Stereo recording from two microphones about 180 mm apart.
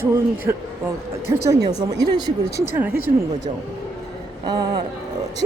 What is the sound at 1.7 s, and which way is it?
Speech, 20° right (ahead or behind).